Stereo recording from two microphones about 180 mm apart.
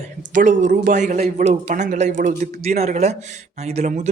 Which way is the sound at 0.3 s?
45° right (ahead or behind).